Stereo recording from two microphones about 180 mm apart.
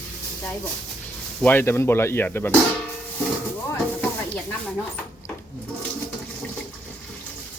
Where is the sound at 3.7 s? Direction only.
10° left (ahead or behind).